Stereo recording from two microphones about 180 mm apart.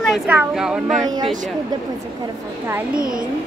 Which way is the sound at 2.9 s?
50° right (ahead or behind).